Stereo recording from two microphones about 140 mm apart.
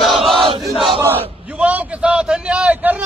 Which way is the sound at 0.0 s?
Centre (ahead or behind).